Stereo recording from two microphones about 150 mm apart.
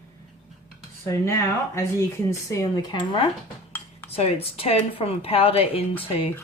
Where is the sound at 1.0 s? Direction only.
20° left (ahead or behind).